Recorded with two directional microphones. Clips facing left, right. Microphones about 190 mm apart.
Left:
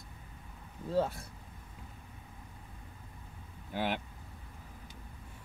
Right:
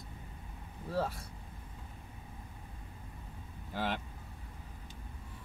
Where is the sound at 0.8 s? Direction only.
20° left (ahead or behind).